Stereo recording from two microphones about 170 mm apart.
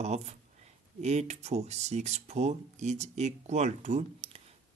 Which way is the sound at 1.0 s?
40° right (ahead or behind).